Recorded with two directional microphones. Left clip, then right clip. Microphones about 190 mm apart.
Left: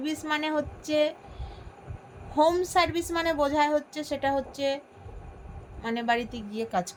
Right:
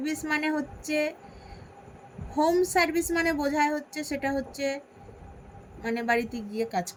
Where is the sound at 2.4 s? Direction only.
10° right (ahead or behind).